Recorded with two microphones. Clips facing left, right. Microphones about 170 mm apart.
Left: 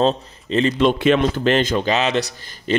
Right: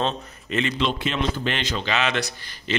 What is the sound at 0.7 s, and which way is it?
A man's voice, 55° left (ahead or behind).